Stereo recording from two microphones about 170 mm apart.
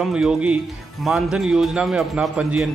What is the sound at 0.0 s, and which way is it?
A man's voice, 5° right (ahead or behind).